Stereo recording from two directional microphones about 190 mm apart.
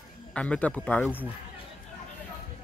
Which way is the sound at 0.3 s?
5° left (ahead or behind).